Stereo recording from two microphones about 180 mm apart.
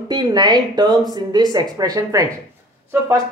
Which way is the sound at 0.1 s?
25° right (ahead or behind).